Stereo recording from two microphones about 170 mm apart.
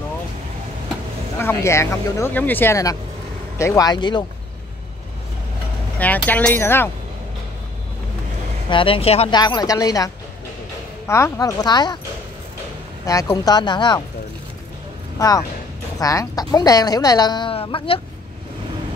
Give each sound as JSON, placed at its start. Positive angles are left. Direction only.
{"t": 1.4, "sound": "a woman's voice", "side_deg": 15}
{"t": 5.9, "sound": "speech", "side_deg": 10}
{"t": 8.6, "sound": "speech", "side_deg": 30}
{"t": 9.3, "sound": "a woman's voice", "side_deg": 25}
{"t": 13.0, "sound": "a woman's voice", "side_deg": 20}
{"t": 15.1, "sound": "a woman's voice", "side_deg": 20}